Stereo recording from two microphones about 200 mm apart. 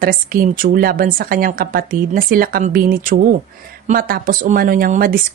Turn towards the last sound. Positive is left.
turn(degrees=-45)  # may be behind; listen again after turning